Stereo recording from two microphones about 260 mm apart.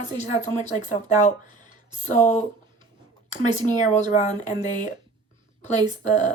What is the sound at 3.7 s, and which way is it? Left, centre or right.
Speech, left.